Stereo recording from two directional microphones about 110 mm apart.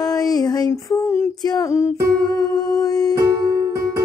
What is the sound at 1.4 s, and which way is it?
Music, 35° left (ahead or behind).